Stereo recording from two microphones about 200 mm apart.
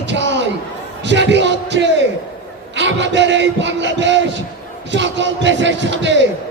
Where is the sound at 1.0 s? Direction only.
60° right (ahead or behind).